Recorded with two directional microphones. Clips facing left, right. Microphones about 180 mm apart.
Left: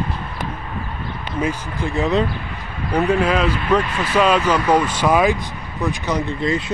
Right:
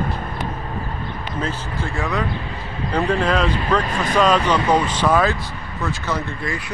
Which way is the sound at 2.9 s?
10° left (ahead or behind).